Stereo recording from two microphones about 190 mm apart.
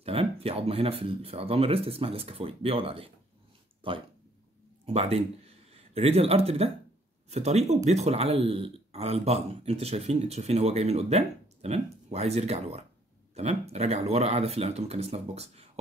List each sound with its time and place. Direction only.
0.0 s speech: 30° right (ahead or behind)